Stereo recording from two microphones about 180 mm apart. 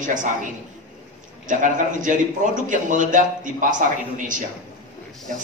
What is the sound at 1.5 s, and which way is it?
A man's voice, 45° right (ahead or behind).